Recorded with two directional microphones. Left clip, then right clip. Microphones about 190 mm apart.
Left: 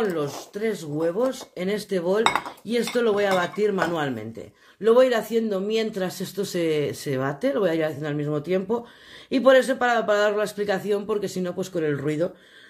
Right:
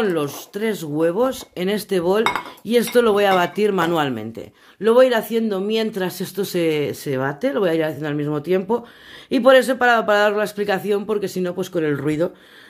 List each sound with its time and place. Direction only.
0.0 s speech: 45° right (ahead or behind)
4.8 s speech: 30° right (ahead or behind)